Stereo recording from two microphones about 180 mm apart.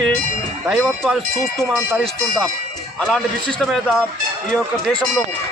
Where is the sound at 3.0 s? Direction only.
5° left (ahead or behind).